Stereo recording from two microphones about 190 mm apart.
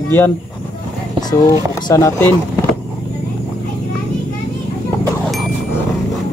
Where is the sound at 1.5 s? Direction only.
20° left (ahead or behind).